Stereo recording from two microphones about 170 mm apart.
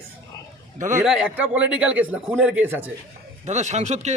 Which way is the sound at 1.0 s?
5° right (ahead or behind).